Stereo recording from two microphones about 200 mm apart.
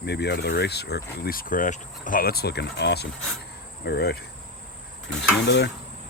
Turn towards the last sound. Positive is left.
turn(degrees=60)  # may be behind; listen again after turning